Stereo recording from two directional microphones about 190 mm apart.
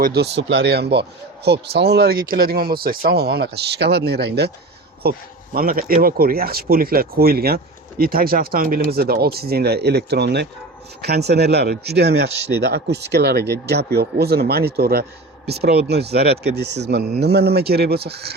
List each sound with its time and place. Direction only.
0.0 s speech: 60° right (ahead or behind)